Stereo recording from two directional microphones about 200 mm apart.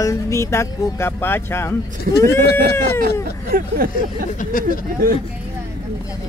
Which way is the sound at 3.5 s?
45° right (ahead or behind).